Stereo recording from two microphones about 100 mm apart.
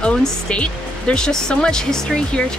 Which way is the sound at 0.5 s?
10° left (ahead or behind).